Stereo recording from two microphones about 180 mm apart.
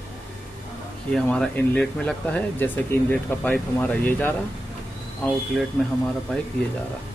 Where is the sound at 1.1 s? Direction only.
5° left (ahead or behind).